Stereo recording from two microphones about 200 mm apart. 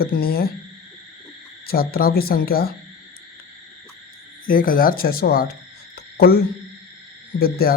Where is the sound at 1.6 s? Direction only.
50° left (ahead or behind).